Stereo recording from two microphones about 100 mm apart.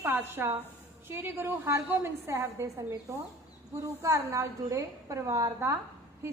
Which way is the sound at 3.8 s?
35° right (ahead or behind).